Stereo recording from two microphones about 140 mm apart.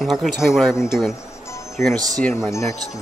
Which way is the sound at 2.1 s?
10° left (ahead or behind).